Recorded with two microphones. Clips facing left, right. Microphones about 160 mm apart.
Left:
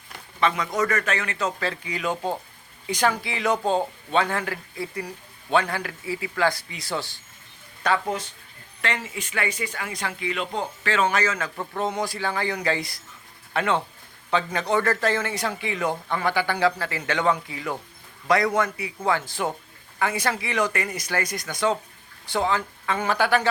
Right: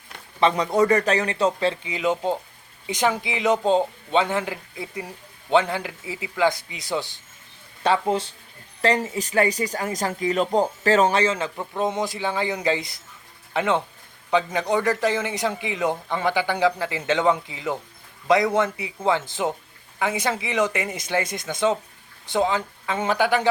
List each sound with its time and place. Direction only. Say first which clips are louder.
0.3 s a man's voice: right 5 dB; 30° right (ahead or behind)
11.5 s a man's voice: right 2 dB; 15° right (ahead or behind)